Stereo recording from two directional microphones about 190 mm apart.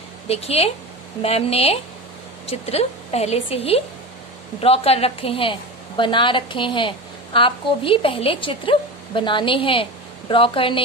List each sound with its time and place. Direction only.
0.3 s a woman's voice: 30° left (ahead or behind)